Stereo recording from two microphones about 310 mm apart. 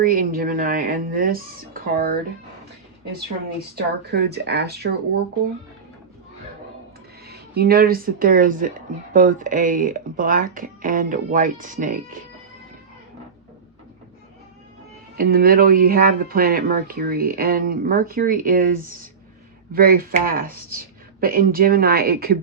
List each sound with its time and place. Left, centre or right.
0.0 s speech: right
3.8 s speech: right
7.3 s speech: right
15.2 s speech: right